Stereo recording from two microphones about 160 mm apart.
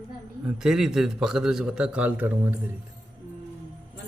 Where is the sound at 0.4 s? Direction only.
5° right (ahead or behind).